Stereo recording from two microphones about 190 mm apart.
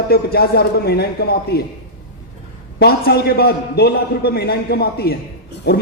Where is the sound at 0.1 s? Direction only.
55° left (ahead or behind).